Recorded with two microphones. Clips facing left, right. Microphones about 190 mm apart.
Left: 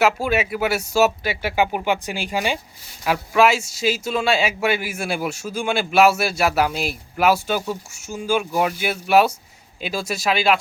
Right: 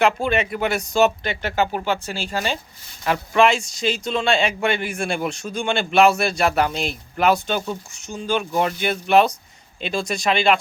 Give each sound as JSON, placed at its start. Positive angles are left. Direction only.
{"t": 0.0, "sound": "speech", "side_deg": 5}